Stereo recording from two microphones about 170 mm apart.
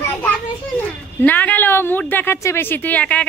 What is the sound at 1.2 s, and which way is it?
A woman's voice, 10° left (ahead or behind).